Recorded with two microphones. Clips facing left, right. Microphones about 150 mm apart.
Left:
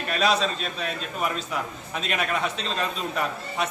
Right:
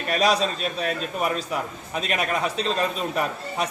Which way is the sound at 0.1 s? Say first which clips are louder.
Right 2 dB; 40° right (ahead or behind).